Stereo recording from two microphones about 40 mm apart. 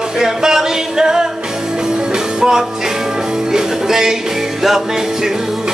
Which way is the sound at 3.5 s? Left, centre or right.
Centre.